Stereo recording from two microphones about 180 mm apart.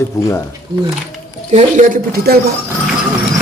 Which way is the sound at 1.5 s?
40° right (ahead or behind).